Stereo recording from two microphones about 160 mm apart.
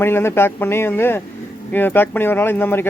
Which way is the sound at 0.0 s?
15° left (ahead or behind).